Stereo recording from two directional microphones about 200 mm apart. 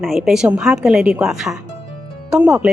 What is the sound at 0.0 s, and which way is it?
A woman's voice, centre (ahead or behind).